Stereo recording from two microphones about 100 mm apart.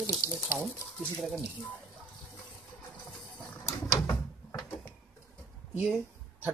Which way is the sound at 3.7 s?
35° left (ahead or behind).